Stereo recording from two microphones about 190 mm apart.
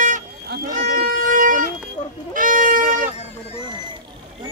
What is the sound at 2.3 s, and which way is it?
Music, 45° right (ahead or behind).